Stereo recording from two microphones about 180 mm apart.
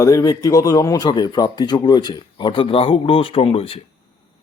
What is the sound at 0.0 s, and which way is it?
Speech, 20° left (ahead or behind).